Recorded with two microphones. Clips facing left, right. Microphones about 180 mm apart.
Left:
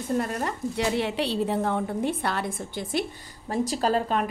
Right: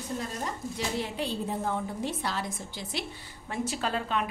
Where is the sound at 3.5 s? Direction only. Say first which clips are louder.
Left 7 dB; 35° left (ahead or behind).